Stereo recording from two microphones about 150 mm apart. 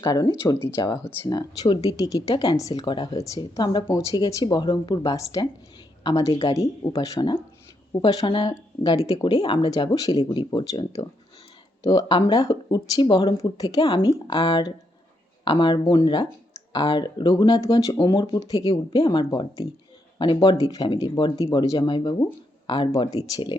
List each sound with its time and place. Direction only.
0.0 s speech: 25° left (ahead or behind)